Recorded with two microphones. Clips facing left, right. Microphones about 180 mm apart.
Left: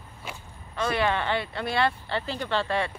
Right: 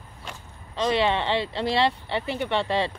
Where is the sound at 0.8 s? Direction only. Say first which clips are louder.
Right 3 dB; 25° right (ahead or behind).